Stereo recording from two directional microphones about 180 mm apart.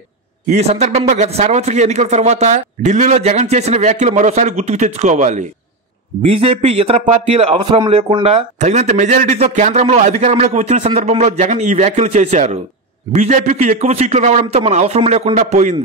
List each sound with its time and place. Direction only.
0.5 s a man's voice: 35° right (ahead or behind)